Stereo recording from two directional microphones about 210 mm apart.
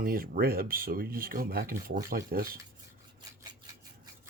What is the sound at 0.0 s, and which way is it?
Speech, 45° right (ahead or behind).